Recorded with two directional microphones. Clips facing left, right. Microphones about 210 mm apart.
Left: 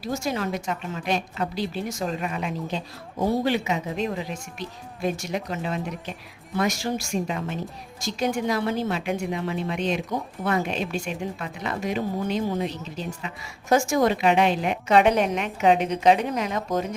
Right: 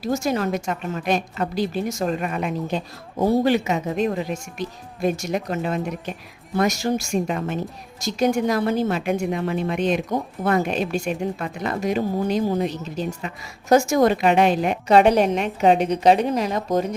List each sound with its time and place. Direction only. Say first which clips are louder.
0.0 s a woman's voice: right 5 dB; 45° right (ahead or behind)